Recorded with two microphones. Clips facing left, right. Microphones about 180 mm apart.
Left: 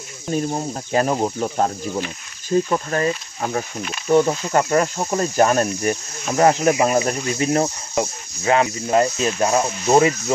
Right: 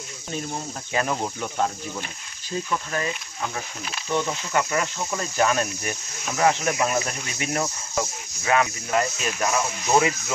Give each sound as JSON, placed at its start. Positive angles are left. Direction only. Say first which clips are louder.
{"t": 0.3, "sound": "cricket", "louder": "left 9 dB", "side_deg": 40}
{"t": 2.5, "sound": "cricket", "louder": "left 8 dB", "side_deg": 45}